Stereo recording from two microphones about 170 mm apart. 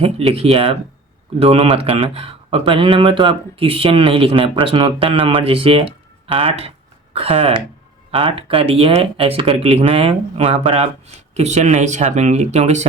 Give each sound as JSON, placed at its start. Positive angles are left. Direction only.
{"t": 0.0, "sound": "speech", "side_deg": -35}